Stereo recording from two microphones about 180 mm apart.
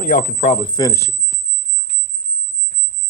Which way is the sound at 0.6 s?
20° left (ahead or behind).